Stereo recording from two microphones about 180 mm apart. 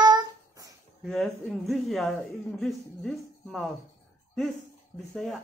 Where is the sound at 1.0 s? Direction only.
5° left (ahead or behind).